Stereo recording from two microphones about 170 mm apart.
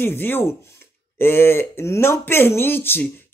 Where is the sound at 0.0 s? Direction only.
10° left (ahead or behind).